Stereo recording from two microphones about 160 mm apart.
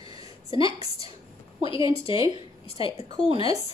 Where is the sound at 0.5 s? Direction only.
35° left (ahead or behind).